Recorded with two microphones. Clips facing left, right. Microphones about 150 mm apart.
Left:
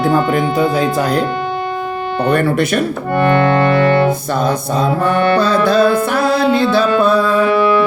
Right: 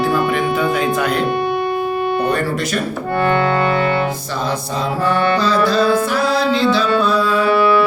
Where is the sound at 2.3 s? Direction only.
60° left (ahead or behind).